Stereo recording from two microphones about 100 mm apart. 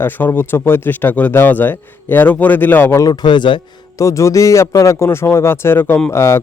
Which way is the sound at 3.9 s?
30° left (ahead or behind).